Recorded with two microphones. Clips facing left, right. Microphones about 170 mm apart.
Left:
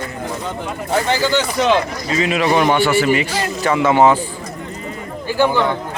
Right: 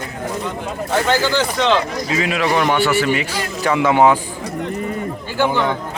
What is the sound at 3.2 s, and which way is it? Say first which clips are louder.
Speech: left 2 dB; 5° right (ahead or behind).